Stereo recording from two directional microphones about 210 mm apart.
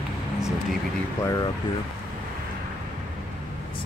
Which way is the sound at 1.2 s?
15° left (ahead or behind).